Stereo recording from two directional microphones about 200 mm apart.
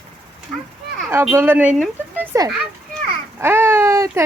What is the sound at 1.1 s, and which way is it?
Speech, 10° right (ahead or behind).